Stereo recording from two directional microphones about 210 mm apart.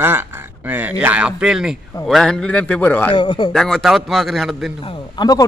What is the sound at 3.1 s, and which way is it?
Speech, 20° left (ahead or behind).